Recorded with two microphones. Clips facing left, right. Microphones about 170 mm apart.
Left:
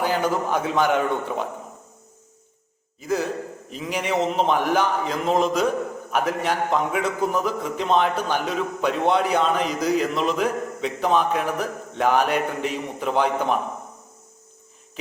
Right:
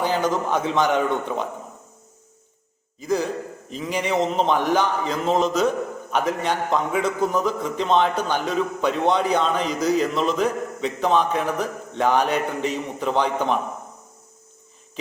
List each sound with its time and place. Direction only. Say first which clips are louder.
0.0 s a man's voice: even; 5° left (ahead or behind)
3.7 s a man's voice: right 1 dB; 5° left (ahead or behind)